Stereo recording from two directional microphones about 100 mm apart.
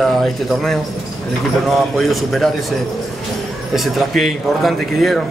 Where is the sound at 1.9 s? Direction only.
Centre (ahead or behind).